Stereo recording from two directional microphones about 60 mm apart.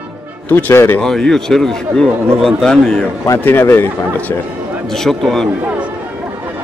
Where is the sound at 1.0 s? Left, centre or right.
Centre.